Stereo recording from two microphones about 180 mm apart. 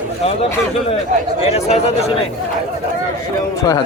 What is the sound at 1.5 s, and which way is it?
Speech, 35° left (ahead or behind).